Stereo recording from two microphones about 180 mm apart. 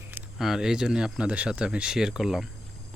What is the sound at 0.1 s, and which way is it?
Speech, centre (ahead or behind).